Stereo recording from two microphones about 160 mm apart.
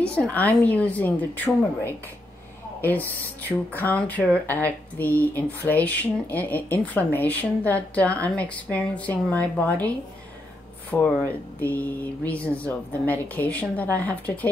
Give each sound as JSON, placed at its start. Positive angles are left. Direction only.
{"t": 0.3, "sound": "speech", "side_deg": 10}